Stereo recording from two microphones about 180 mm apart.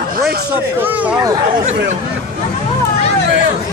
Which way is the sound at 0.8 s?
10° right (ahead or behind).